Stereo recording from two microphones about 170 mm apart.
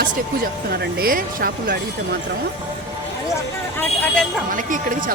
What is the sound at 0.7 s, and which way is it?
Speech, 70° right (ahead or behind).